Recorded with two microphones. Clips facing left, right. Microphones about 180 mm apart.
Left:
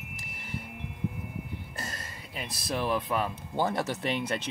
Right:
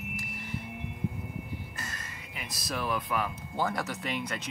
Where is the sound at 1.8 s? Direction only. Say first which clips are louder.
Left 2 dB; 35° left (ahead or behind).